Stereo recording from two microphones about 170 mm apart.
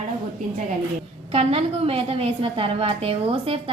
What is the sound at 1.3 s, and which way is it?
A woman's voice, 35° right (ahead or behind).